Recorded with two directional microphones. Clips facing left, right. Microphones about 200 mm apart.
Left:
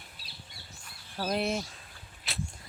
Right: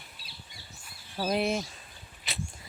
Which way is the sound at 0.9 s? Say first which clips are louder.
Right 2 dB; 5° right (ahead or behind).